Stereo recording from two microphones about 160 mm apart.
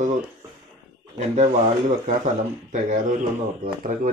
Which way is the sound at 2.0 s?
50° right (ahead or behind).